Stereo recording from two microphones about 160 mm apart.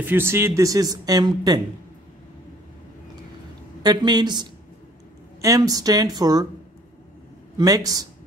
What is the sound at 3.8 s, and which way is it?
Speech, 25° right (ahead or behind).